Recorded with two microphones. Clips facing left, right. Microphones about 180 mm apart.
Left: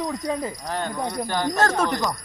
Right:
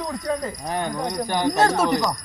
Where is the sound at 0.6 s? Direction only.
15° right (ahead or behind).